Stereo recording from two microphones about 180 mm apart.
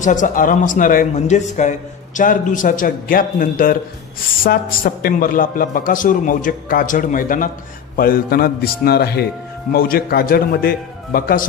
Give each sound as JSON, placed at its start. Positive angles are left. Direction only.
{"t": 0.0, "sound": "a man's voice", "side_deg": 45}